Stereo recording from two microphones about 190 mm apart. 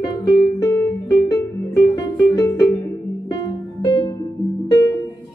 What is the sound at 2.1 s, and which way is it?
Music, 15° left (ahead or behind).